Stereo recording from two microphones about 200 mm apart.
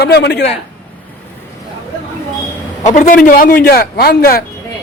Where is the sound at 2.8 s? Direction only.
40° left (ahead or behind).